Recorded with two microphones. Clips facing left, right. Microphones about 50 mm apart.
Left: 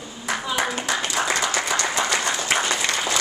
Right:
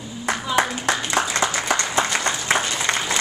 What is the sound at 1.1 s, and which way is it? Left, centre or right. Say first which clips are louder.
Applause: even; right.